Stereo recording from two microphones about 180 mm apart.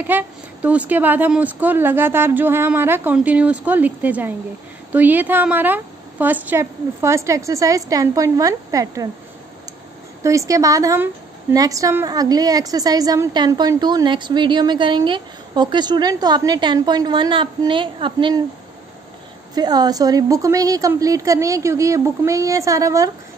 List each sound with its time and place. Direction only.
0.0 s a woman's voice: 10° right (ahead or behind)
10.2 s a woman's voice: 15° right (ahead or behind)
19.5 s a woman's voice: 20° right (ahead or behind)